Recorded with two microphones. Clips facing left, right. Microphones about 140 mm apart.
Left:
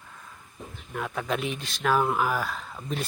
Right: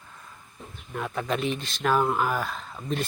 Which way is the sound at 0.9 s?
Centre (ahead or behind).